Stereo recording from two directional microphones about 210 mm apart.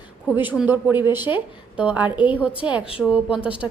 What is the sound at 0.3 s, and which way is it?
A woman's voice, 5° right (ahead or behind).